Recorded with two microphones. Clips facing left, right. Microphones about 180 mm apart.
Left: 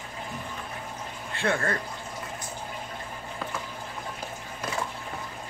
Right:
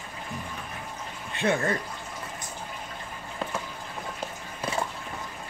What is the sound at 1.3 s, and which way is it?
Speech, 20° right (ahead or behind).